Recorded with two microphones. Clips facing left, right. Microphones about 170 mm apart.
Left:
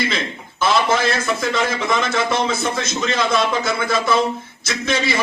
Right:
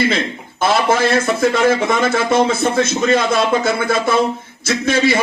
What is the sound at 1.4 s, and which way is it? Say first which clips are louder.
A man's voice: right 7 dB; 50° right (ahead or behind).